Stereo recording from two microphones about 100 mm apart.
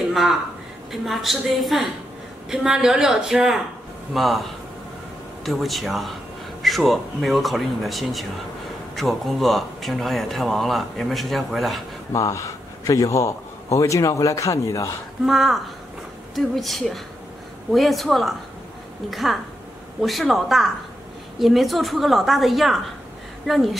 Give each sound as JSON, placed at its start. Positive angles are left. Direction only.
{"t": 0.1, "sound": "a woman's voice", "side_deg": 0}
{"t": 12.1, "sound": "a man's voice", "side_deg": 35}
{"t": 15.2, "sound": "speech", "side_deg": 0}